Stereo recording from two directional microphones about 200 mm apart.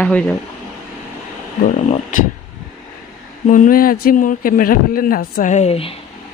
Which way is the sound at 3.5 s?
45° left (ahead or behind).